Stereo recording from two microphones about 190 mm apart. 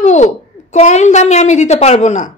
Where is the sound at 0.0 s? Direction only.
35° left (ahead or behind).